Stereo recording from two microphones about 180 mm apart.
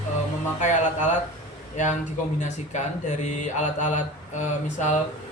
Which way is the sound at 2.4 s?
40° left (ahead or behind).